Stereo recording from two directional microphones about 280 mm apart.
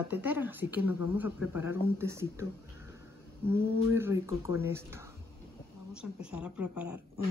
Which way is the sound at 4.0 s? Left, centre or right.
Centre.